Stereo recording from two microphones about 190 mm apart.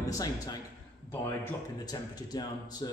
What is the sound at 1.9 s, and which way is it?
Speech, 20° left (ahead or behind).